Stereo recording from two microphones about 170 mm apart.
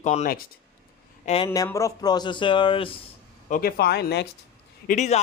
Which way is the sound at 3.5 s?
60° left (ahead or behind).